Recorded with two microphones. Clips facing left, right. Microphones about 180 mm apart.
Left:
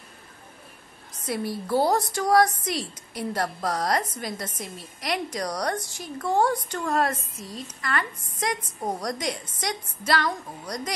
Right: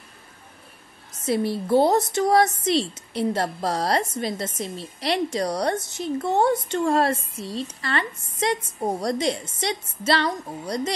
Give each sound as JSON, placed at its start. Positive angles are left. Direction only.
{"t": 1.2, "sound": "a woman's voice", "side_deg": -25}